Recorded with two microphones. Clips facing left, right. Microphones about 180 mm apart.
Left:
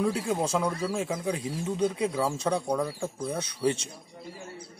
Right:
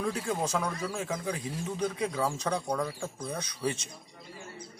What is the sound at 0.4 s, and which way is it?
Speech, 30° left (ahead or behind).